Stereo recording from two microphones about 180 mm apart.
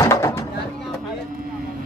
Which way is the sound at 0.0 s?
15° left (ahead or behind).